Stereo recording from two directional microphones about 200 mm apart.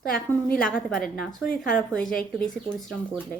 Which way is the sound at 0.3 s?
5° left (ahead or behind).